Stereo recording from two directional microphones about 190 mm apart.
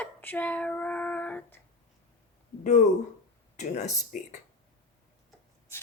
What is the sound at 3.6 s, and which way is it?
Speech, 35° left (ahead or behind).